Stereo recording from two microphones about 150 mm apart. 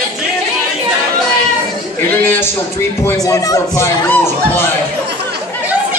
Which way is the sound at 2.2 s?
15° left (ahead or behind).